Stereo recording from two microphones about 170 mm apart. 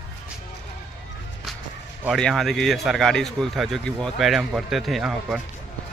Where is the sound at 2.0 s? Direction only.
5° left (ahead or behind).